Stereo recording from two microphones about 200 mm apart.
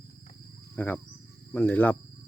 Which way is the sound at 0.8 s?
10° left (ahead or behind).